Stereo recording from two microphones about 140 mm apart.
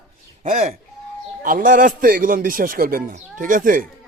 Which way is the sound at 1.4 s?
75° right (ahead or behind).